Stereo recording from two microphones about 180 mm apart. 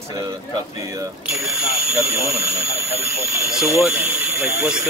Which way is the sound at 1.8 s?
10° right (ahead or behind).